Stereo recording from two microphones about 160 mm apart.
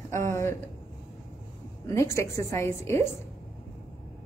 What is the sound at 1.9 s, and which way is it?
A woman's voice, 20° left (ahead or behind).